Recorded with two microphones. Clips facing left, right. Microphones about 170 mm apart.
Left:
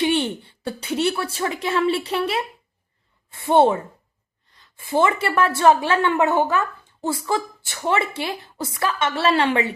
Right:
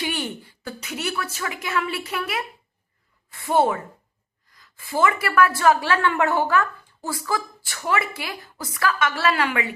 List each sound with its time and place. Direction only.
0.0 s a woman's voice: 25° left (ahead or behind)